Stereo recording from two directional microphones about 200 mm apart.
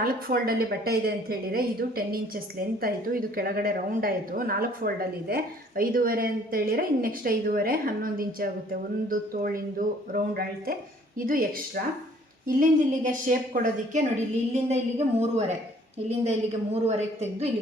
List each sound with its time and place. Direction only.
0.0 s a woman's voice: 45° right (ahead or behind)
16.8 s a woman's voice: 30° right (ahead or behind)